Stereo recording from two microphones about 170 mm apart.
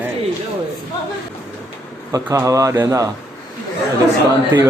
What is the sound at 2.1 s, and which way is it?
A man's voice, 20° right (ahead or behind).